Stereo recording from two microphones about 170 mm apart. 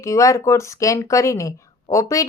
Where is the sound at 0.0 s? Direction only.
20° left (ahead or behind).